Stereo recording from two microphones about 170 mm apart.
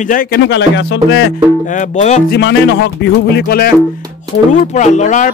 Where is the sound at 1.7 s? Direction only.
45° left (ahead or behind).